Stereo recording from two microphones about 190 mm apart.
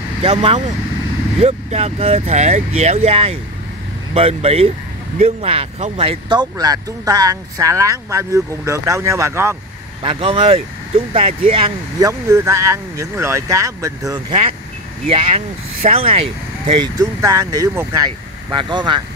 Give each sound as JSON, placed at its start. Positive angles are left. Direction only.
{"t": 0.2, "sound": "speech", "side_deg": -30}
{"t": 10.0, "sound": "speech", "side_deg": -30}
{"t": 12.0, "sound": "speech", "side_deg": -15}
{"t": 15.0, "sound": "speech", "side_deg": -30}